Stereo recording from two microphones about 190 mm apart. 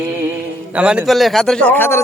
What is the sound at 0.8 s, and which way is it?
A man's voice, 5° right (ahead or behind).